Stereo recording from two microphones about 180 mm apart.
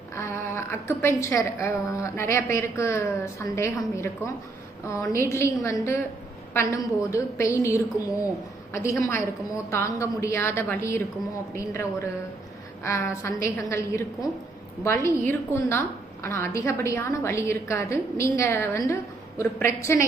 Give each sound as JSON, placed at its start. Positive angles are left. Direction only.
{"t": 0.2, "sound": "a woman's voice", "side_deg": 15}